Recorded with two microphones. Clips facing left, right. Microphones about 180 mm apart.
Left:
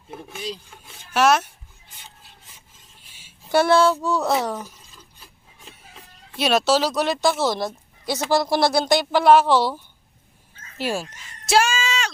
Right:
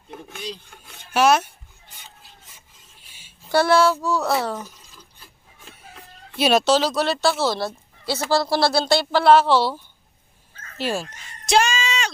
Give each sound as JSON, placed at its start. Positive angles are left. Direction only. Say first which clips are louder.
{"t": 0.1, "sound": "speech", "louder": "left 2 dB", "side_deg": 10}
{"t": 3.5, "sound": "child singing", "louder": "even", "side_deg": 20}
{"t": 4.0, "sound": "speech", "louder": "even", "side_deg": 0}
{"t": 4.3, "sound": "speech", "louder": "left 1 dB", "side_deg": 15}
{"t": 5.9, "sound": "speech", "louder": "right 2 dB", "side_deg": 0}
{"t": 11.4, "sound": "a sound", "louder": "even", "side_deg": 5}